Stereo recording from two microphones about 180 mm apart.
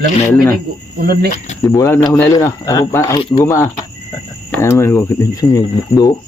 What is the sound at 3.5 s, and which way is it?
Speech, 15° left (ahead or behind).